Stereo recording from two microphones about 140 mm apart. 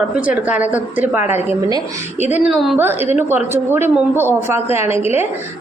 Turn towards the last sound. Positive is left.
turn(degrees=-20)  # may be behind; listen again after turning